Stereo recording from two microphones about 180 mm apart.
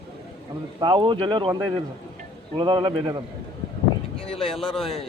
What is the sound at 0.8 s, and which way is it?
Speech, 25° right (ahead or behind).